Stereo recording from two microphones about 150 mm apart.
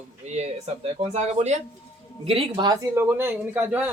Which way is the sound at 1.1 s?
45° right (ahead or behind).